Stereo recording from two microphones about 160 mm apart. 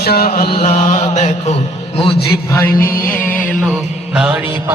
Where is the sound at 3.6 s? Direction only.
5° right (ahead or behind).